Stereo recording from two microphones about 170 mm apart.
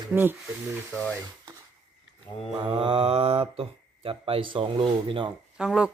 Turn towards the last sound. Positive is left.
turn(degrees=-5)  # may be behind; listen again after turning